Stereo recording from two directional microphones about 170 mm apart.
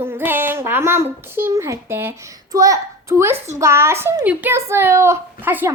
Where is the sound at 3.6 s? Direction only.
15° right (ahead or behind).